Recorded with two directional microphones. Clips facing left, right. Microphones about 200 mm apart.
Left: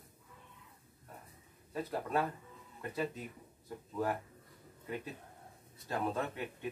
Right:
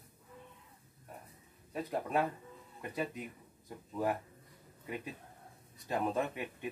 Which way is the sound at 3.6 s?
15° right (ahead or behind).